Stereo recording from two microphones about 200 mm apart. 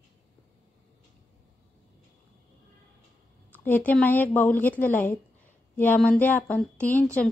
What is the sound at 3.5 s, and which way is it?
A woman's voice, 10° left (ahead or behind).